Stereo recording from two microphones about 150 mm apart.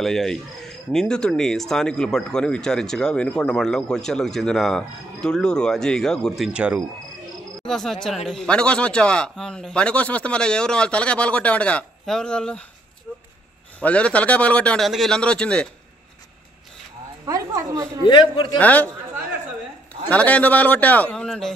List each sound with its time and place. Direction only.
0.0 s speech: centre (ahead or behind)
7.6 s speech: 5° left (ahead or behind)
13.7 s speech: 10° left (ahead or behind)
17.3 s a woman's voice: 25° right (ahead or behind)
18.0 s a man's voice: 30° left (ahead or behind)
18.6 s speech: 10° left (ahead or behind)
20.1 s speech: 10° left (ahead or behind)